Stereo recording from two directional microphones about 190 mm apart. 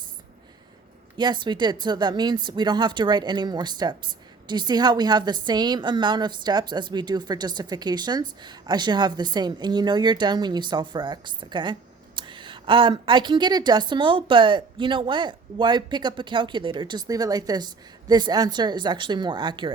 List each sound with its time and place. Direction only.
1.1 s a woman's voice: 25° right (ahead or behind)